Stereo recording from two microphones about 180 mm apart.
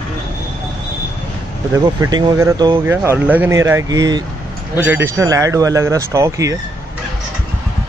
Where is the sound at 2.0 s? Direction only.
15° right (ahead or behind).